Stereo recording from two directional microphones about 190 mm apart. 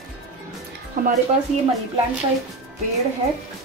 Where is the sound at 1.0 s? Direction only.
50° right (ahead or behind).